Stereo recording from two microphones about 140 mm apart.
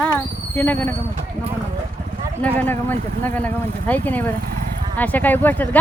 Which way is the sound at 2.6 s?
15° left (ahead or behind).